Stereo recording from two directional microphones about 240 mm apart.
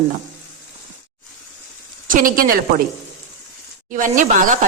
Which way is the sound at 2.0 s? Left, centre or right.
Right.